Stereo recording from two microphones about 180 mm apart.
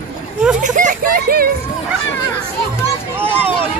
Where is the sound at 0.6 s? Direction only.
45° right (ahead or behind).